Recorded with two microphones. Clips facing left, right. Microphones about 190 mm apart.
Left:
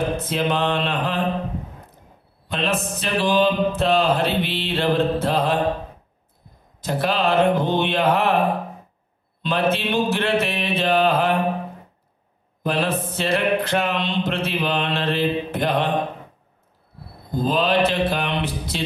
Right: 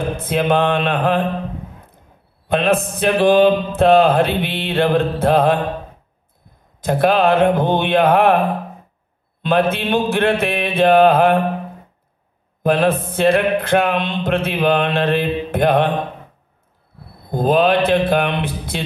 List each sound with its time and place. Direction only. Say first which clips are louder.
0.2 s mantra: right 5 dB; 55° right (ahead or behind)
2.4 s mantra: right 7 dB; 55° right (ahead or behind)
6.8 s mantra: right 7 dB; 55° right (ahead or behind)
12.6 s mantra: right 7 dB; 55° right (ahead or behind)
17.3 s mantra: right 6 dB; 55° right (ahead or behind)